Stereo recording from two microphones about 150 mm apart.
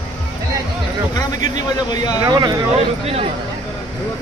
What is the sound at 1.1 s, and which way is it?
Speech, 25° left (ahead or behind).